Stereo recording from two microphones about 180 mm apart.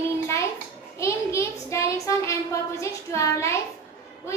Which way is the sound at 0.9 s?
15° left (ahead or behind).